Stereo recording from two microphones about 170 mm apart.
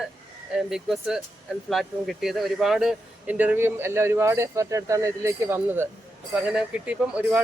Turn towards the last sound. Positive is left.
turn(degrees=-5)  # may be behind; listen again after turning